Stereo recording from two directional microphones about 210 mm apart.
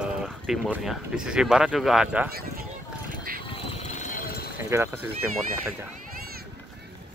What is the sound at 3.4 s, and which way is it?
Vehicle, 25° left (ahead or behind).